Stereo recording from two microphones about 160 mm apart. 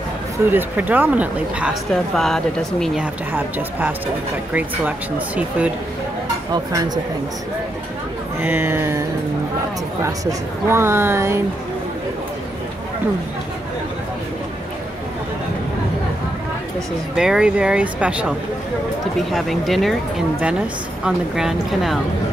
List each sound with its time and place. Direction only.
0.5 s speech: 10° right (ahead or behind)
3.3 s speech: 10° right (ahead or behind)
6.5 s speech: 25° right (ahead or behind)
8.4 s speech: 15° right (ahead or behind)
10.0 s speech: 15° right (ahead or behind)
17.1 s speech: 5° right (ahead or behind)
19.3 s speech: centre (ahead or behind)